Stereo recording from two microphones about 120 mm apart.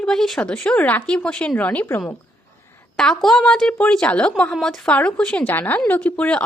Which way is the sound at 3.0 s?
5° left (ahead or behind).